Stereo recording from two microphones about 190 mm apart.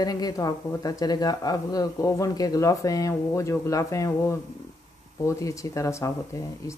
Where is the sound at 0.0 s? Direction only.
20° left (ahead or behind).